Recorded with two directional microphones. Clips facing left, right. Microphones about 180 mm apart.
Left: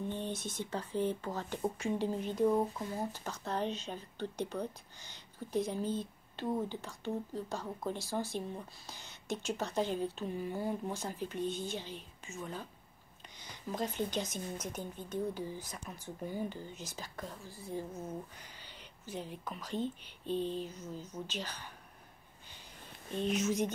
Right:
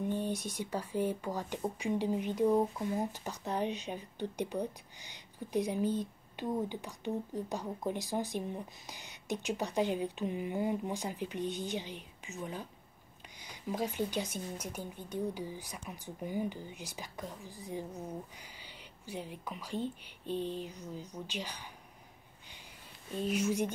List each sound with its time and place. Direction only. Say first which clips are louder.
0.0 s a woman's voice: right 4 dB; 10° right (ahead or behind)
23.1 s a woman's voice: even; 10° right (ahead or behind)